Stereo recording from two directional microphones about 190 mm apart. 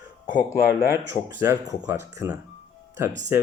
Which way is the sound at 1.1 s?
15° right (ahead or behind).